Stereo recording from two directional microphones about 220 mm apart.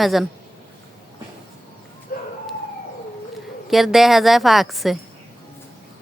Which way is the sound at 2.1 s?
45° left (ahead or behind).